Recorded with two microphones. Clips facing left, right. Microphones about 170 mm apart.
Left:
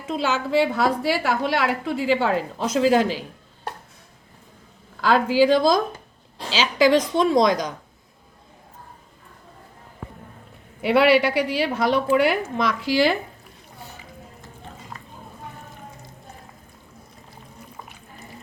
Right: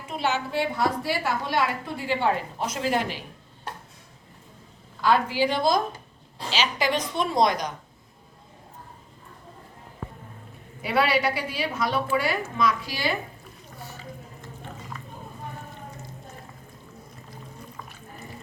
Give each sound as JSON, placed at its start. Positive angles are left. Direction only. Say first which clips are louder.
{"t": 0.1, "sound": "a woman's voice", "louder": "left 5 dB", "side_deg": 90}
{"t": 4.9, "sound": "a woman's voice", "louder": "left 5 dB", "side_deg": 90}
{"t": 10.8, "sound": "a woman's voice", "louder": "left 6 dB", "side_deg": 75}